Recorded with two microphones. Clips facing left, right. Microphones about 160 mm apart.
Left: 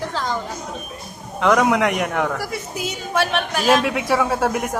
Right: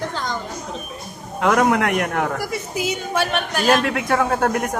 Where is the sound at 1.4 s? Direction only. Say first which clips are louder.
Left 1 dB; centre (ahead or behind).